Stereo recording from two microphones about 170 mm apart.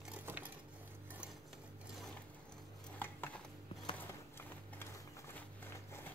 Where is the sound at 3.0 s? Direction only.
10° left (ahead or behind).